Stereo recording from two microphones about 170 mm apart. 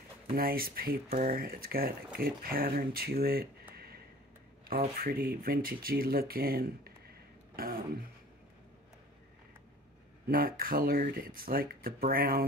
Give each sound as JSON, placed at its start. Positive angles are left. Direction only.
{"t": 0.4, "sound": "speech", "side_deg": -60}
{"t": 7.5, "sound": "a sound", "side_deg": -60}
{"t": 10.2, "sound": "speech", "side_deg": -60}